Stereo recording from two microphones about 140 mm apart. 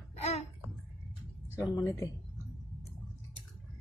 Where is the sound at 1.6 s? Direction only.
25° left (ahead or behind).